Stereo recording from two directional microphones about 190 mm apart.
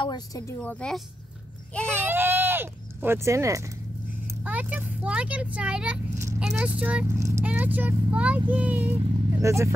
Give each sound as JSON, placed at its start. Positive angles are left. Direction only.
{"t": 0.0, "sound": "speech", "side_deg": 20}
{"t": 0.6, "sound": "a woman's voice", "side_deg": 5}
{"t": 2.0, "sound": "speech", "side_deg": -10}